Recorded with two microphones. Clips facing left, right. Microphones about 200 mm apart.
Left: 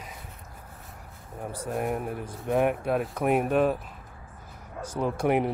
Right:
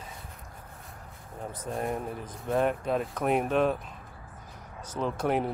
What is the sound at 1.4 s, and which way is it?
Speech, 10° left (ahead or behind).